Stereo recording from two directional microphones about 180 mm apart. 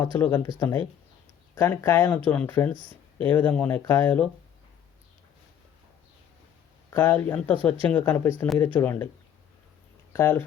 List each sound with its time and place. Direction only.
0.0 s speech: 15° left (ahead or behind)
6.9 s speech: 10° left (ahead or behind)
10.1 s speech: 15° left (ahead or behind)